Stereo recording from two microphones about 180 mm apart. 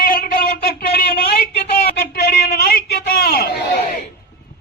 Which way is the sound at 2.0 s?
70° left (ahead or behind).